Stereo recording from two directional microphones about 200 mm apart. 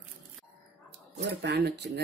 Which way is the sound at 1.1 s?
55° right (ahead or behind).